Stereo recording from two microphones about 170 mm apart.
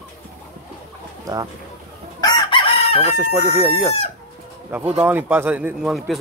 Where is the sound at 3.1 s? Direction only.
15° right (ahead or behind).